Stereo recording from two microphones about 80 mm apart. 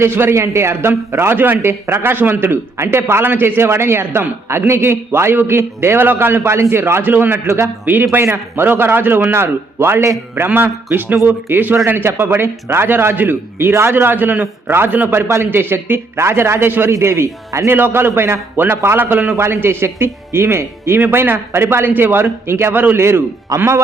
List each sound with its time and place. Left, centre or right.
0.0 s a man's voice: right
17.7 s a man's voice: right